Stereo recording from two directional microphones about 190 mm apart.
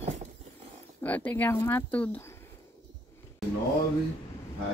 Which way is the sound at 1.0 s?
10° left (ahead or behind).